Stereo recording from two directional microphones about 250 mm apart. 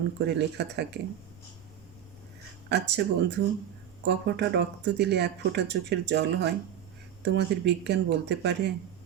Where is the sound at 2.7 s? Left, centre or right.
Right.